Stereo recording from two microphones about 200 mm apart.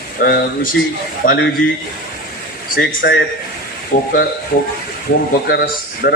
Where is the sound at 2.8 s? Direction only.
55° left (ahead or behind).